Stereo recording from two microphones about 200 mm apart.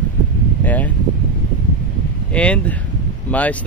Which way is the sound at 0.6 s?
10° left (ahead or behind).